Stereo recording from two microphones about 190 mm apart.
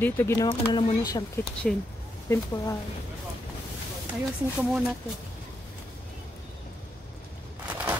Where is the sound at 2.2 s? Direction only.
15° left (ahead or behind).